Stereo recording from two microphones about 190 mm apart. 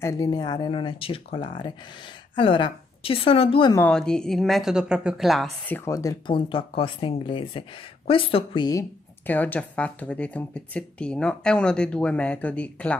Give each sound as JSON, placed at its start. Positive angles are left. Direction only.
{"t": 0.0, "sound": "speech", "side_deg": 20}
{"t": 3.7, "sound": "speech", "side_deg": 5}
{"t": 5.9, "sound": "speech", "side_deg": 15}
{"t": 9.2, "sound": "speech", "side_deg": 10}